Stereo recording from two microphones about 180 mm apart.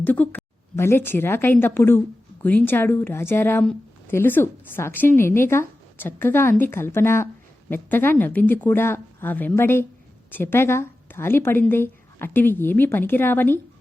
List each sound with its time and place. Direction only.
0.0 s a woman's voice: 10° left (ahead or behind)